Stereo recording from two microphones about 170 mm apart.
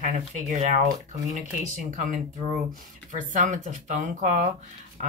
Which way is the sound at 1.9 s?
50° right (ahead or behind).